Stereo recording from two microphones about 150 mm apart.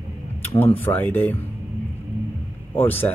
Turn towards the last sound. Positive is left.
turn(degrees=15)  # may be behind; listen again after turning